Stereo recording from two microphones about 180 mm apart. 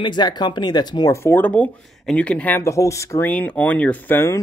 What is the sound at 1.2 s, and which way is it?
Speech, 10° left (ahead or behind).